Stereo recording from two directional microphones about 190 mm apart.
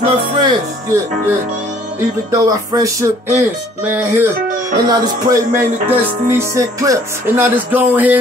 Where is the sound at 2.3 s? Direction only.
15° right (ahead or behind).